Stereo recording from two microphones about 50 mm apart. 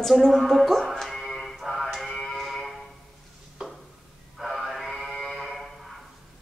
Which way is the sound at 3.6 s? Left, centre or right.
Centre.